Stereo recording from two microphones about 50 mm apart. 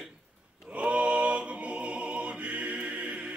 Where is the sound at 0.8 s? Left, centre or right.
Right.